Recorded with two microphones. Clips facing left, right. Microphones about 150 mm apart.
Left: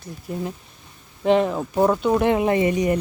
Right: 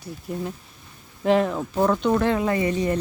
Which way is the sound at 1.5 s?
15° left (ahead or behind).